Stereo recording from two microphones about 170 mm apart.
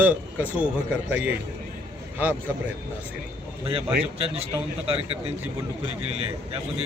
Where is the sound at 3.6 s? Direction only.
35° right (ahead or behind).